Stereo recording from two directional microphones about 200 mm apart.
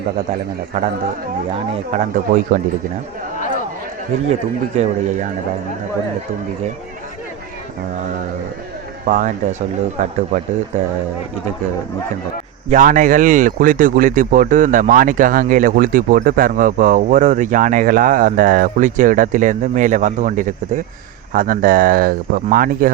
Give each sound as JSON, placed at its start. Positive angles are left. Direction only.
{"t": 0.7, "sound": "a man's voice", "side_deg": -35}
{"t": 4.3, "sound": "a man's voice", "side_deg": -35}
{"t": 9.0, "sound": "a man's voice", "side_deg": -35}
{"t": 12.6, "sound": "a man's voice", "side_deg": -40}